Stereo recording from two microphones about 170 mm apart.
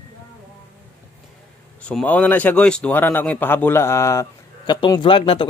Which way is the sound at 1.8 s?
5° left (ahead or behind).